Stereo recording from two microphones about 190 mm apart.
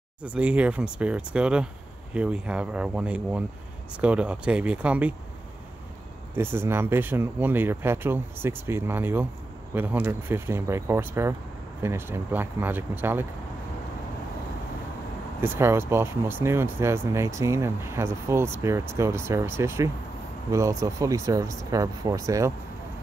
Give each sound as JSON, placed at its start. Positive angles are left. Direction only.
{"t": 0.2, "sound": "speech", "side_deg": -5}
{"t": 6.3, "sound": "speech", "side_deg": -10}
{"t": 15.4, "sound": "speech", "side_deg": -15}